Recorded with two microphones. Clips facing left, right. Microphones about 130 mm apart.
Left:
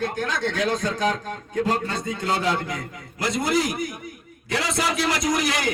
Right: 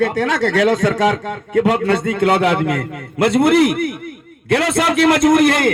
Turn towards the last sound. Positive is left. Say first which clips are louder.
# right 11 dB
turn(degrees=-55)  # may be behind; listen again after turning